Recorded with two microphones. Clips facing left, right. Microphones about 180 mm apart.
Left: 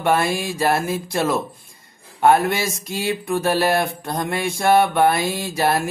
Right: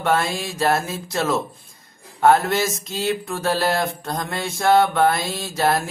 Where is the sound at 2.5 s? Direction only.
10° left (ahead or behind).